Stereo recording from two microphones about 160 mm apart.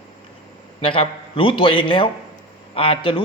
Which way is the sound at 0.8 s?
35° left (ahead or behind).